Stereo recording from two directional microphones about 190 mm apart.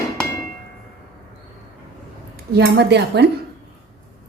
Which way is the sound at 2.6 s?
60° right (ahead or behind).